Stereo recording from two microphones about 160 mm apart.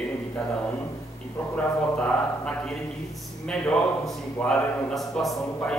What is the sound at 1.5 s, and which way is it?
A man's voice, 5° left (ahead or behind).